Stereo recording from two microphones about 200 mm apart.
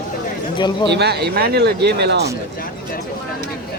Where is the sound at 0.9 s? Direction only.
55° right (ahead or behind).